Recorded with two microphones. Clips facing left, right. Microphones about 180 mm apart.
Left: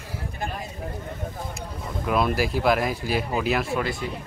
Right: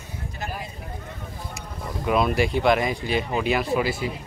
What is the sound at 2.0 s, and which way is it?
Speech, centre (ahead or behind).